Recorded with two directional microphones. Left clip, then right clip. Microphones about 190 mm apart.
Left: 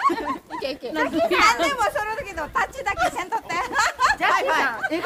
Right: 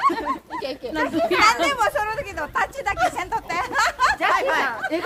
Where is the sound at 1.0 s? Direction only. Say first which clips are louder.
Even; 50° left (ahead or behind).